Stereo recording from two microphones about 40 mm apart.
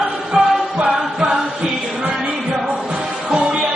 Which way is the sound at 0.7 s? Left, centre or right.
Right.